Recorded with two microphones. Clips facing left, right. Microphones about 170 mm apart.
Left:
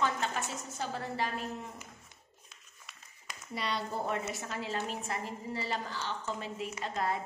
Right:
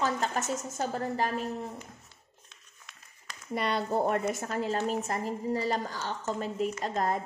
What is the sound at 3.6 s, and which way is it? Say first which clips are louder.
A woman's voice: right 7 dB; 50° right (ahead or behind).